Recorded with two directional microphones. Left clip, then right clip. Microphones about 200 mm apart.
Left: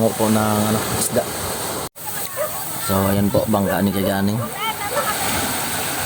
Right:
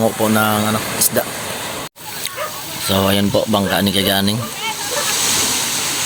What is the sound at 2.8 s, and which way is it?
Speech, 5° right (ahead or behind).